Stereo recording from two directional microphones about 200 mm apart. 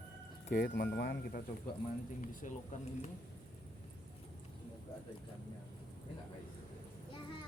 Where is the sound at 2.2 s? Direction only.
40° left (ahead or behind).